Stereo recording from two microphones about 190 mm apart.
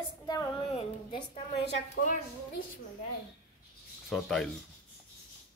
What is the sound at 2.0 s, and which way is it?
Speech, 60° left (ahead or behind).